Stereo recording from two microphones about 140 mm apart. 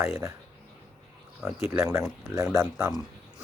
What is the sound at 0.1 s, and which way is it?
Speech, 20° right (ahead or behind).